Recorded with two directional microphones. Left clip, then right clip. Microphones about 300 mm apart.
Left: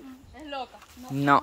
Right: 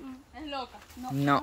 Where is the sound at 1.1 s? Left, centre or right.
Centre.